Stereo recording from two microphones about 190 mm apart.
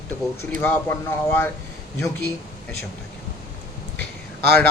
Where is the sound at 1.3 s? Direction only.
10° left (ahead or behind).